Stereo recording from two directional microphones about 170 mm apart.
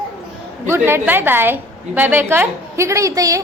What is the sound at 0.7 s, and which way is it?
A woman's voice, 15° right (ahead or behind).